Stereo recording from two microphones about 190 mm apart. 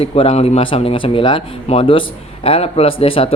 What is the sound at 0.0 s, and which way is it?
Speech, 30° left (ahead or behind).